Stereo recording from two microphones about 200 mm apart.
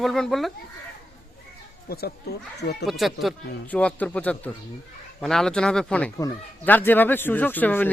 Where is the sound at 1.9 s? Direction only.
50° left (ahead or behind).